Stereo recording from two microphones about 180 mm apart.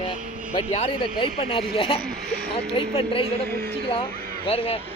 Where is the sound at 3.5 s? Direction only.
60° right (ahead or behind).